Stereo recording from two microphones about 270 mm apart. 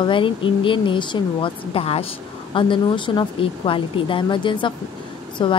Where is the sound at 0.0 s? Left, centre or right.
Centre.